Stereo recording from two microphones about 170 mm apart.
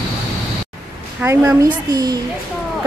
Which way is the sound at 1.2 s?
15° right (ahead or behind).